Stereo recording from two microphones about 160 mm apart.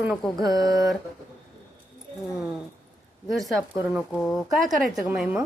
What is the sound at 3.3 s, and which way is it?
A woman's voice, centre (ahead or behind).